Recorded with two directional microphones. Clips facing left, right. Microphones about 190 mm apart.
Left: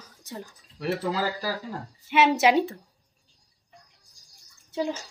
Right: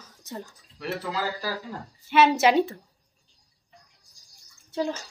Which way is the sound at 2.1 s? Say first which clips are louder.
Right 1 dB; 15° left (ahead or behind).